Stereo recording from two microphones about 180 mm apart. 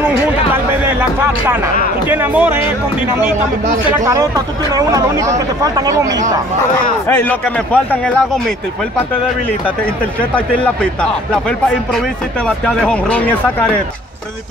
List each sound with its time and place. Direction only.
0.0 s a sound: 10° right (ahead or behind)
2.0 s speech: 10° right (ahead or behind)
4.0 s speech: 20° right (ahead or behind)
7.1 s speech: 10° left (ahead or behind)
10.3 s speech: 5° left (ahead or behind)